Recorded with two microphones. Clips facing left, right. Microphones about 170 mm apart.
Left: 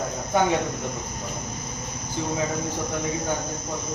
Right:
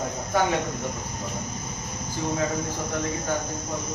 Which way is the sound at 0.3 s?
20° left (ahead or behind).